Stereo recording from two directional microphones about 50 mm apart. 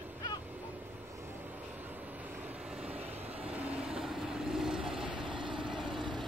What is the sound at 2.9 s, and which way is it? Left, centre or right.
Vehicle, right.